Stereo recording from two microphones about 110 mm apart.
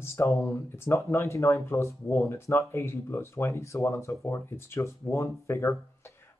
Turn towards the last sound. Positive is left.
turn(degrees=25)  # may be behind; listen again after turning